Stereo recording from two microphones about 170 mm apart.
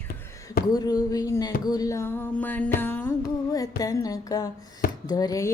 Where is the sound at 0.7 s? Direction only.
20° left (ahead or behind).